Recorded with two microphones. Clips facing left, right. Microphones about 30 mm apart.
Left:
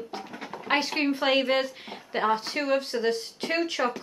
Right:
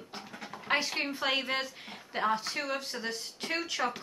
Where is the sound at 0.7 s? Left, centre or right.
Centre.